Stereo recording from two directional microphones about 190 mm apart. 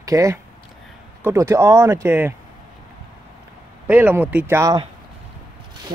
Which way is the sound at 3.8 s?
10° right (ahead or behind).